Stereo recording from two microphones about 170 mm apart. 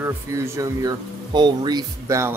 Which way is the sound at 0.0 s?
20° right (ahead or behind).